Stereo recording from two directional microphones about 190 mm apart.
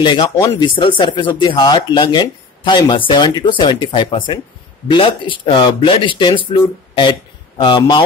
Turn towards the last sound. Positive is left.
turn(degrees=25)  # may be behind; listen again after turning